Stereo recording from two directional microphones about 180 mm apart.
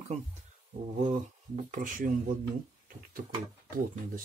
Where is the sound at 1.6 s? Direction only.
45° right (ahead or behind).